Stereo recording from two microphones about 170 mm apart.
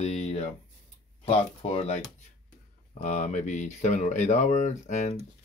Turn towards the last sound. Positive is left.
turn(degrees=45)  # may be behind; listen again after turning